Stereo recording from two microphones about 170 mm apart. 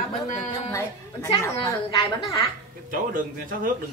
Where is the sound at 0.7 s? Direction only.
20° left (ahead or behind).